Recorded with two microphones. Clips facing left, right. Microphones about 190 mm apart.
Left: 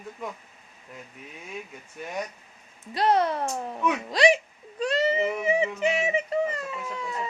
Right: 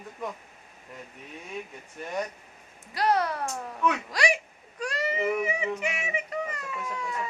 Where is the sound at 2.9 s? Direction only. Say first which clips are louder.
Left 3 dB; 25° left (ahead or behind).